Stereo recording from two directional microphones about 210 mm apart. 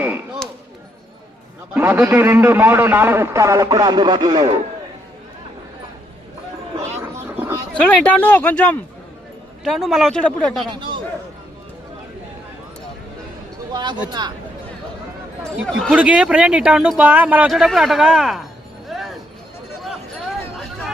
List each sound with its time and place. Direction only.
1.7 s a man's voice: 10° right (ahead or behind)
7.3 s a sound: 10° right (ahead or behind)
8.0 s speech: 5° left (ahead or behind)
10.7 s speech: 20° right (ahead or behind)
13.7 s speech: 20° right (ahead or behind)
15.6 s speech: centre (ahead or behind)
18.9 s a sound: centre (ahead or behind)